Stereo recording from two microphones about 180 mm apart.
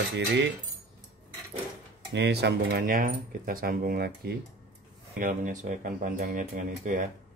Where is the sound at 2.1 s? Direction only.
65° right (ahead or behind).